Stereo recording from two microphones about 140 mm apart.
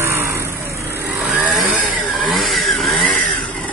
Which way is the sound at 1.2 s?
5° right (ahead or behind).